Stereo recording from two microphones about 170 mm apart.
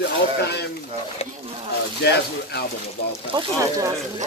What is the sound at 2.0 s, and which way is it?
Speech, 75° left (ahead or behind).